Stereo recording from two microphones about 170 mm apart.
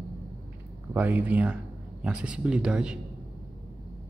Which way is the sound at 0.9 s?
10° right (ahead or behind).